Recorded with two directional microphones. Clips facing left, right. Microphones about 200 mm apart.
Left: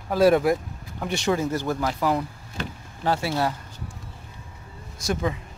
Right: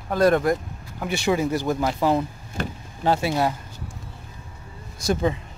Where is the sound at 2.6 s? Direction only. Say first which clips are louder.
Right 4 dB; 55° right (ahead or behind).